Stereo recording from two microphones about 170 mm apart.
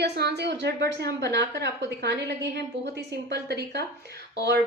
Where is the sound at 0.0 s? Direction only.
75° right (ahead or behind).